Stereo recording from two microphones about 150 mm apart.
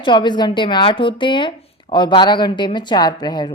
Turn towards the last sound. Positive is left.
turn(degrees=30)  # may be behind; listen again after turning